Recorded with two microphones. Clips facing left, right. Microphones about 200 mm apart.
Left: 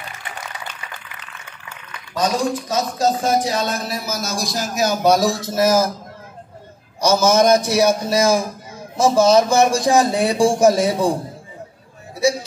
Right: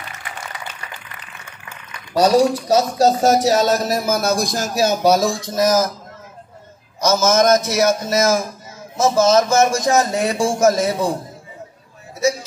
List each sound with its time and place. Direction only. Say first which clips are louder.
2.1 s speech: right 6 dB; 40° right (ahead or behind); by 4.6 s 55° right (ahead or behind)
5.0 s speech: left 2 dB; centre (ahead or behind)
5.5 s a man's voice: even; 10° left (ahead or behind)
7.0 s a man's voice: left 1 dB; 10° left (ahead or behind)